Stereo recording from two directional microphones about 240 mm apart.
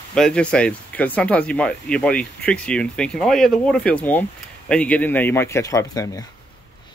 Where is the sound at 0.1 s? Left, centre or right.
Centre.